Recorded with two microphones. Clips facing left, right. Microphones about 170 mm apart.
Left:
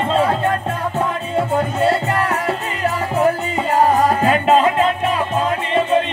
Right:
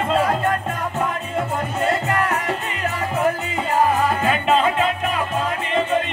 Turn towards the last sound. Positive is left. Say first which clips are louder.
# left 4 dB
turn(degrees=40)  # may be behind; listen again after turning